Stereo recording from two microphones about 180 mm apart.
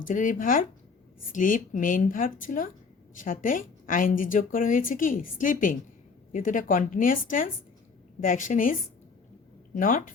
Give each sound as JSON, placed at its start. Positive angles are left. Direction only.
{"t": 0.0, "sound": "a woman's voice", "side_deg": 45}
{"t": 9.7, "sound": "a woman's voice", "side_deg": 50}